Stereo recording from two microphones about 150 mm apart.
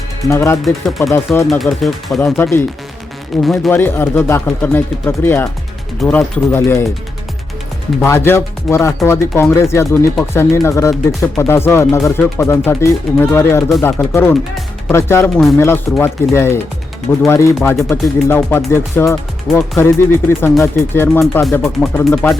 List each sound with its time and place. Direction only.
0.3 s speech: 20° left (ahead or behind)
0.6 s speech: centre (ahead or behind)
1.1 s speech: 15° left (ahead or behind)
1.5 s speech: centre (ahead or behind)
2.2 s speech: 15° left (ahead or behind)
3.4 s speech: centre (ahead or behind)
3.7 s speech: 15° left (ahead or behind)
8.0 s speech: 15° left (ahead or behind)